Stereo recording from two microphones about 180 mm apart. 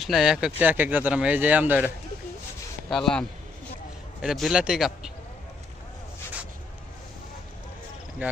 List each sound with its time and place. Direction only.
0.0 s speech: centre (ahead or behind)
2.9 s a man's voice: 5° left (ahead or behind)
8.2 s speech: 10° right (ahead or behind)